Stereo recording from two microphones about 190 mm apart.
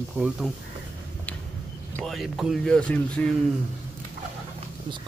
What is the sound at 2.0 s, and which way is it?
Speech, centre (ahead or behind).